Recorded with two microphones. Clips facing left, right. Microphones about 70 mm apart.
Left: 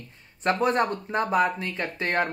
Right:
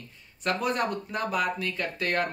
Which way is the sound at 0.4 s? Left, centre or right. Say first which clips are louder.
Left 5 dB; left.